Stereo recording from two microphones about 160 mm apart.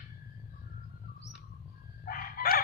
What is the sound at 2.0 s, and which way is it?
Crowing, 65° left (ahead or behind).